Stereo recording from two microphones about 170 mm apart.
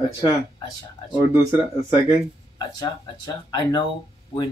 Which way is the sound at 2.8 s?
25° left (ahead or behind).